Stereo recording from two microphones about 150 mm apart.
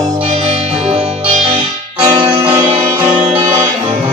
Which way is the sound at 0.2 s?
40° right (ahead or behind).